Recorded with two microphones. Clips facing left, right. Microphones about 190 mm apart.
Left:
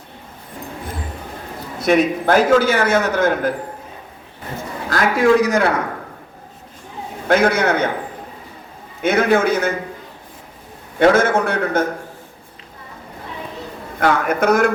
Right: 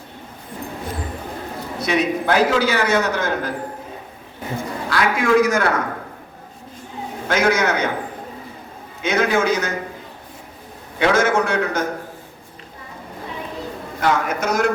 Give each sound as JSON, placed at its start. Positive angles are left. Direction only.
{"t": 1.8, "sound": "a man's voice", "side_deg": 50}
{"t": 4.9, "sound": "a man's voice", "side_deg": 40}
{"t": 7.3, "sound": "a man's voice", "side_deg": 60}
{"t": 9.0, "sound": "a man's voice", "side_deg": 55}
{"t": 11.0, "sound": "a man's voice", "side_deg": 55}
{"t": 14.0, "sound": "a man's voice", "side_deg": 55}